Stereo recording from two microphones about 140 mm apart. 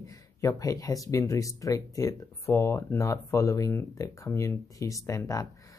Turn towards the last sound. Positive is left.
turn(degrees=25)  # may be behind; listen again after turning